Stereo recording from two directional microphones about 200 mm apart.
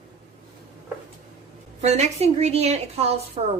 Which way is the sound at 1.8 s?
35° right (ahead or behind).